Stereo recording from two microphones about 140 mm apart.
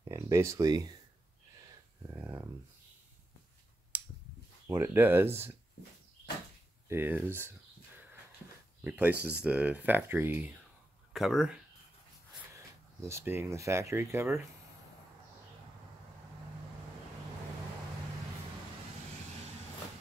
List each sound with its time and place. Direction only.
0.1 s speech: 20° right (ahead or behind)
2.0 s a sound: 15° right (ahead or behind)
3.9 s a sound: 10° right (ahead or behind)
4.6 s speech: 20° right (ahead or behind)
6.9 s speech: 15° right (ahead or behind)
8.8 s speech: 10° right (ahead or behind)
11.1 s speech: centre (ahead or behind)
12.5 s speech: 20° right (ahead or behind)